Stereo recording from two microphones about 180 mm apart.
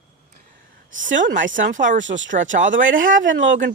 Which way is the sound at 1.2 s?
45° right (ahead or behind).